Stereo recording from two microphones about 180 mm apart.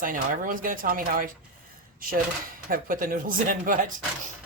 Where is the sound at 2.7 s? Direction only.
50° right (ahead or behind).